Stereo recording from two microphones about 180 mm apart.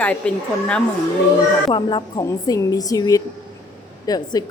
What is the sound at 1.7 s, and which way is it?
A woman's voice, 25° left (ahead or behind).